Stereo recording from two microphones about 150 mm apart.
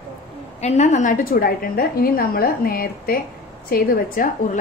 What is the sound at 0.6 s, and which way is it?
A woman's voice, 50° left (ahead or behind).